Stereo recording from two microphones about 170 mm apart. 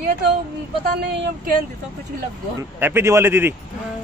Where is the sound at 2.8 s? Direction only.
15° right (ahead or behind).